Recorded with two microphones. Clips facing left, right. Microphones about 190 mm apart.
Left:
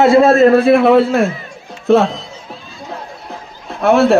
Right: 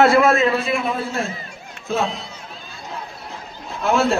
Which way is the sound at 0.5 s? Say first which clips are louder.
Left 13 dB; 60° left (ahead or behind).